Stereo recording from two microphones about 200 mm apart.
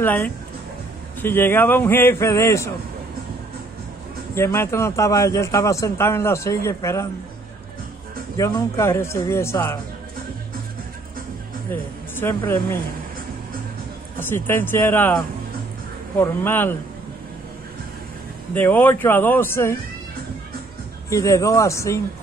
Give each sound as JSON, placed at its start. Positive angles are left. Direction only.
{"t": 0.0, "sound": "a man's voice", "side_deg": 10}
{"t": 4.4, "sound": "a man's voice", "side_deg": 15}
{"t": 8.4, "sound": "a man's voice", "side_deg": 20}
{"t": 11.7, "sound": "speech", "side_deg": 10}
{"t": 14.2, "sound": "a man's voice", "side_deg": 10}
{"t": 18.5, "sound": "a man's voice", "side_deg": 10}
{"t": 21.1, "sound": "a man's voice", "side_deg": 15}